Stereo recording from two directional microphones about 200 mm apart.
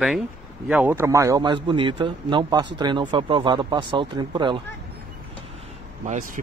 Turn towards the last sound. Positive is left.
turn(degrees=-35)  # may be behind; listen again after turning